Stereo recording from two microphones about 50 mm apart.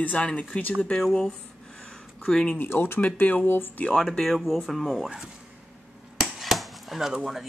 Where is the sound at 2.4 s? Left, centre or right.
Left.